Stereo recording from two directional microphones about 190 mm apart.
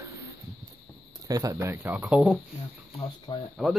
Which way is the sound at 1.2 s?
20° right (ahead or behind).